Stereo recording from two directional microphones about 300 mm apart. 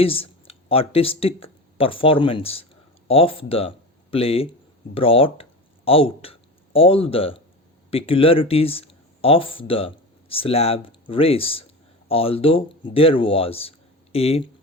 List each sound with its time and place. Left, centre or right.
0.0 s speech: centre